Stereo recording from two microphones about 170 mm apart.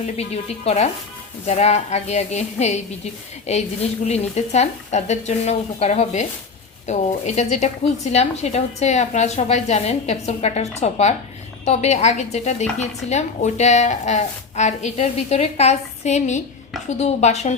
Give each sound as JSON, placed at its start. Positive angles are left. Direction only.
{"t": 0.0, "sound": "a woman's voice", "side_deg": 40}